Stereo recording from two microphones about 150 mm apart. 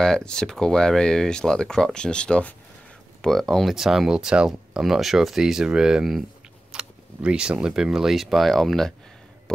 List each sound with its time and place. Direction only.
0.0 s speech: 5° left (ahead or behind)